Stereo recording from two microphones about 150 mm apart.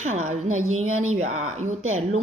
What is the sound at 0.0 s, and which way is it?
Speech, 50° right (ahead or behind).